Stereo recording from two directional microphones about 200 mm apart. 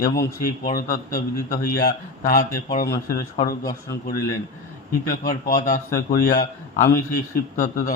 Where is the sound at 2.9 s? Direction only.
15° left (ahead or behind).